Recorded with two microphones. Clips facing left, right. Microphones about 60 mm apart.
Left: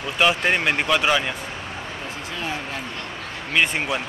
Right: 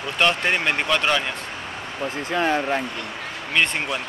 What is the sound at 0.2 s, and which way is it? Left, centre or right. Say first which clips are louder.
Speech: left 1 dB; centre.